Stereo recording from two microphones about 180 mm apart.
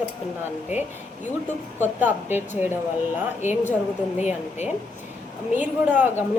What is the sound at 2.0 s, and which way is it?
Speech, 10° right (ahead or behind).